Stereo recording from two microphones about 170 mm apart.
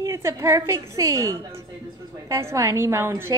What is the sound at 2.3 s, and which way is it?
A woman's voice, 15° right (ahead or behind).